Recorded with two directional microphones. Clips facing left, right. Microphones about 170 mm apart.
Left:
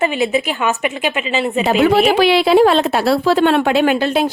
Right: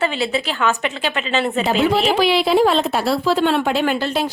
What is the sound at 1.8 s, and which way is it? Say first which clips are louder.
A woman's voice: left 5 dB; 65° left (ahead or behind).